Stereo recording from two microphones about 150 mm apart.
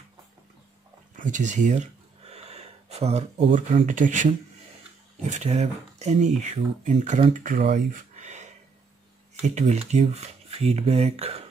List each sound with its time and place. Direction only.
1.1 s speech: 55° right (ahead or behind)
5.4 s speech: 45° right (ahead or behind)
7.3 s speech: 60° right (ahead or behind)
7.7 s a sound: 55° right (ahead or behind)
9.6 s speech: 50° right (ahead or behind)